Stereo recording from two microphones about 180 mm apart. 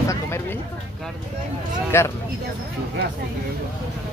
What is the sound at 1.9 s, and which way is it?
Speech, 15° left (ahead or behind).